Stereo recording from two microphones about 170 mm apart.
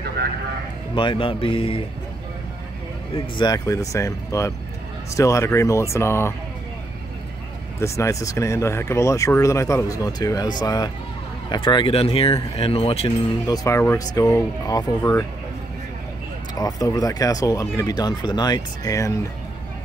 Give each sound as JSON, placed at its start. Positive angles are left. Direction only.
{"t": 0.9, "sound": "speech", "side_deg": 30}
{"t": 3.2, "sound": "speech", "side_deg": 25}
{"t": 7.8, "sound": "speech", "side_deg": 15}
{"t": 13.5, "sound": "speech", "side_deg": 15}
{"t": 16.5, "sound": "speech", "side_deg": 20}